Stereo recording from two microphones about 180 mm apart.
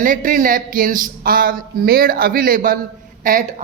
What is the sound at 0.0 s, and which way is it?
A woman's voice, 50° right (ahead or behind).